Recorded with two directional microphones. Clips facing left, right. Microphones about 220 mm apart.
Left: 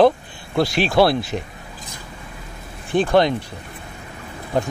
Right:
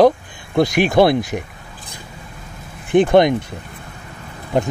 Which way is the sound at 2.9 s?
20° right (ahead or behind).